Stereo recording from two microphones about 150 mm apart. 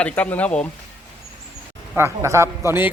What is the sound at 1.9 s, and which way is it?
Speech, 15° right (ahead or behind).